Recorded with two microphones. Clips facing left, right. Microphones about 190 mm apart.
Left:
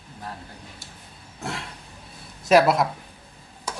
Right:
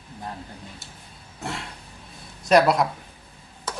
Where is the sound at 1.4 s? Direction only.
Centre (ahead or behind).